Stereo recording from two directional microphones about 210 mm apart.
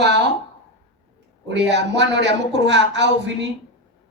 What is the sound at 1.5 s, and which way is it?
A woman's voice, 55° right (ahead or behind).